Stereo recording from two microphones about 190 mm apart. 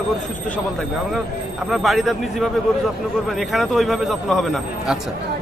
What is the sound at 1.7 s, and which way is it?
Speech, centre (ahead or behind).